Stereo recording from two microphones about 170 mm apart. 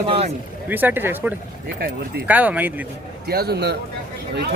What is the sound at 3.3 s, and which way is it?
Speech, 70° right (ahead or behind).